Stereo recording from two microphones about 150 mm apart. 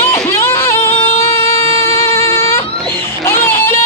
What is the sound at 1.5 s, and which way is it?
Music, 15° left (ahead or behind).